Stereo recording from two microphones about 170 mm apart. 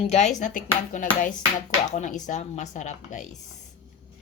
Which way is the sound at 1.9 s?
45° left (ahead or behind).